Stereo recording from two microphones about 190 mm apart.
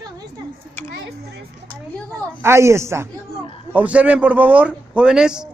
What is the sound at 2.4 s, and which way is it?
A man's voice, 15° right (ahead or behind).